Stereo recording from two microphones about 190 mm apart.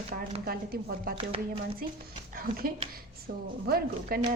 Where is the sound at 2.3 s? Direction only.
50° right (ahead or behind).